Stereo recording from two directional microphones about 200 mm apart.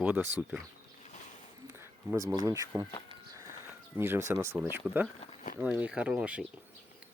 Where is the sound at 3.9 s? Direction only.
10° right (ahead or behind).